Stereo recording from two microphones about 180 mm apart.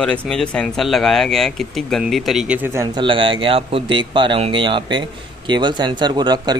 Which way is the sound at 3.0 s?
30° right (ahead or behind).